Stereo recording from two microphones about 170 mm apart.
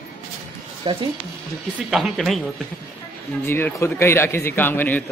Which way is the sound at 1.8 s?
Centre (ahead or behind).